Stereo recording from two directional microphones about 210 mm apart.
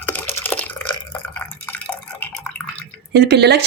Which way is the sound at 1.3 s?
10° left (ahead or behind).